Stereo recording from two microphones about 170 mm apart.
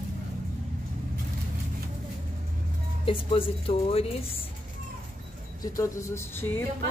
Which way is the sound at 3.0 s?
30° left (ahead or behind).